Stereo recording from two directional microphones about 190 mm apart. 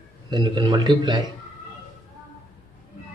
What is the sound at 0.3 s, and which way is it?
Speech, 25° right (ahead or behind).